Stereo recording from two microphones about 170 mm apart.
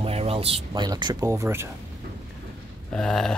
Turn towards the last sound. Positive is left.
turn(degrees=5)  # may be behind; listen again after turning